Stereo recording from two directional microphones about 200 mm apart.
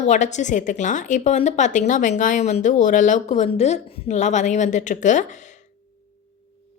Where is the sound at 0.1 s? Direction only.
35° left (ahead or behind).